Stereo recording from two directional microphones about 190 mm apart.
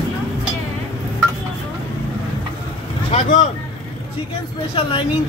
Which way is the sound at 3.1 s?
40° left (ahead or behind).